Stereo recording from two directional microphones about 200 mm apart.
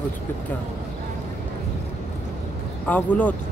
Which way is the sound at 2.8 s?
5° left (ahead or behind).